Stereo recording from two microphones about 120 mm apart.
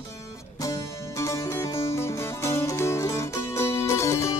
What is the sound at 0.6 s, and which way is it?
Music, 25° left (ahead or behind).